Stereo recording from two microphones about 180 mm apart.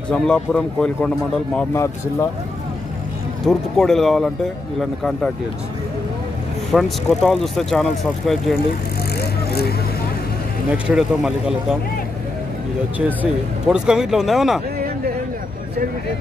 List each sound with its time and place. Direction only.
0.1 s speech: 5° left (ahead or behind)
1.7 s speech: 15° left (ahead or behind)
3.4 s speech: centre (ahead or behind)
6.7 s speech: centre (ahead or behind)
9.2 s vehicle: 60° left (ahead or behind)
10.7 s speech: 5° right (ahead or behind)
13.2 s speech: 5° right (ahead or behind)